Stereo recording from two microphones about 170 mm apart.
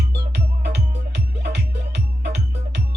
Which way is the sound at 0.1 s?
75° right (ahead or behind).